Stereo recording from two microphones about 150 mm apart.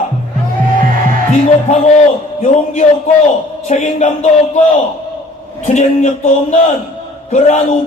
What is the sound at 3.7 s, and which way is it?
Speech, 50° left (ahead or behind).